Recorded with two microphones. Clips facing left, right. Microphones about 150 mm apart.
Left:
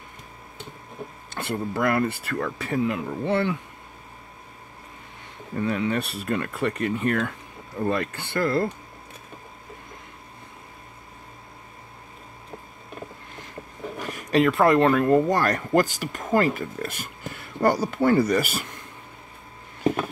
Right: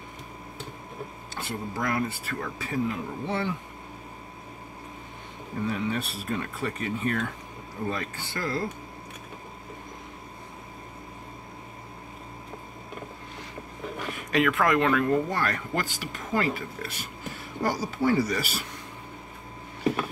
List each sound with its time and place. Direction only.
1.3 s speech: 60° left (ahead or behind)
5.7 s speech: 70° left (ahead or behind)
14.0 s speech: 35° left (ahead or behind)
17.6 s speech: 60° left (ahead or behind)